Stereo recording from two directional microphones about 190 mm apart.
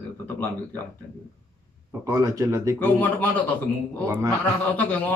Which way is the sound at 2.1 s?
15° right (ahead or behind).